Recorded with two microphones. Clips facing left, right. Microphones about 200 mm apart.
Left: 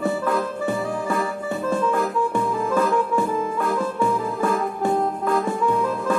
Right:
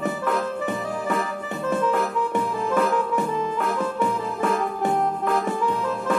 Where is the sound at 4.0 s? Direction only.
20° right (ahead or behind).